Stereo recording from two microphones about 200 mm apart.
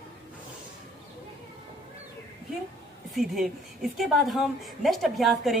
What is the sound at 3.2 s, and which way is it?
A woman's voice, centre (ahead or behind).